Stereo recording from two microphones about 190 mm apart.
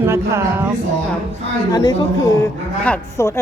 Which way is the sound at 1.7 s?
20° left (ahead or behind).